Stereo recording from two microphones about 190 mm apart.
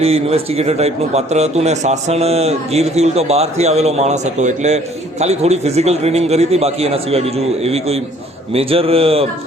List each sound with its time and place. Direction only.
0.0 s speech: 30° right (ahead or behind)